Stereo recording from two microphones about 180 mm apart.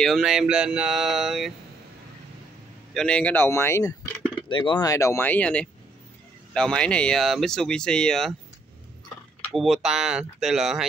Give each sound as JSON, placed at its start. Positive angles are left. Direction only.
{"t": 0.0, "sound": "speech", "side_deg": 0}
{"t": 2.9, "sound": "speech", "side_deg": 5}
{"t": 4.5, "sound": "speech", "side_deg": 25}
{"t": 9.5, "sound": "speech", "side_deg": 0}